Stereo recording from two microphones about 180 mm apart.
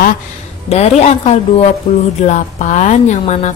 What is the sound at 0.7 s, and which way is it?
A woman's voice, 35° left (ahead or behind).